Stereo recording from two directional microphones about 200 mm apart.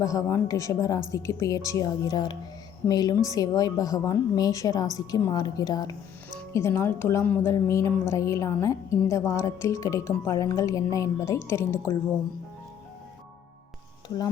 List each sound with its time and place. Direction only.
0.0 s a woman's voice: 15° left (ahead or behind)